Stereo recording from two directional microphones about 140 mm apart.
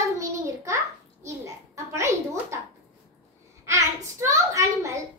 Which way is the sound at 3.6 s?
20° right (ahead or behind).